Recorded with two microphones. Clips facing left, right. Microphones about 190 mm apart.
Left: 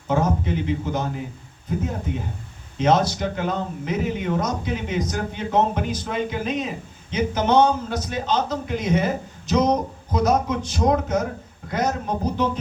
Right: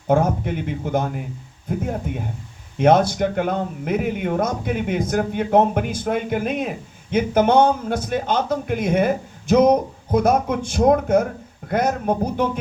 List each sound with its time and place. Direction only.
0.1 s speech: 55° right (ahead or behind)
2.7 s a man's voice: 55° right (ahead or behind)